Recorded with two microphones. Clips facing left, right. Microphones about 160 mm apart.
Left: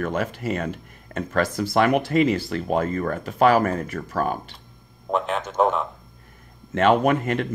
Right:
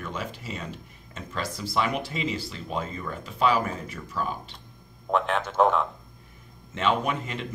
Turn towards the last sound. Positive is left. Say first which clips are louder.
# left 9 dB
turn(degrees=55)  # may be behind; listen again after turning